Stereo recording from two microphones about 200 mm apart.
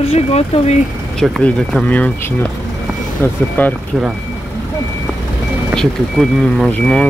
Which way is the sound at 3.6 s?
10° left (ahead or behind).